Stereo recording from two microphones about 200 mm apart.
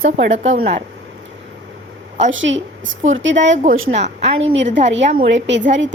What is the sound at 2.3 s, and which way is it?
A woman's voice, 70° right (ahead or behind).